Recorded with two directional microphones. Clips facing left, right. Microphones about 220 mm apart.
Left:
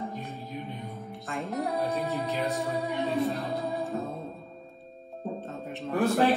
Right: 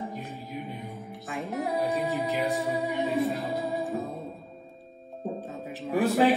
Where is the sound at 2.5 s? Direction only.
Centre (ahead or behind).